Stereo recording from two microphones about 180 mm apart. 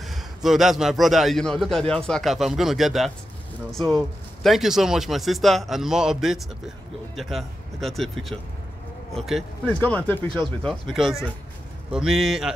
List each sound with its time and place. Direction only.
0.0 s a man's voice: centre (ahead or behind)
10.2 s speech: 25° right (ahead or behind)
10.6 s a man's voice: centre (ahead or behind)